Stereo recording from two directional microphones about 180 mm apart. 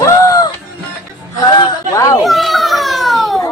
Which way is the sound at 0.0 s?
20° left (ahead or behind).